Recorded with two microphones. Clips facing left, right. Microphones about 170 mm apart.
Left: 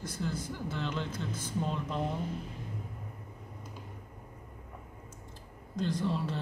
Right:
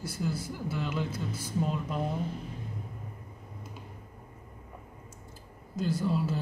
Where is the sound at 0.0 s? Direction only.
10° right (ahead or behind).